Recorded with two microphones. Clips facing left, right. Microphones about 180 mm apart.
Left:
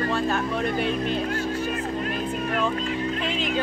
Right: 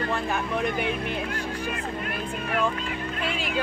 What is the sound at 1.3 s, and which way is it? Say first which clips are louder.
Music: left 4 dB; 40° left (ahead or behind).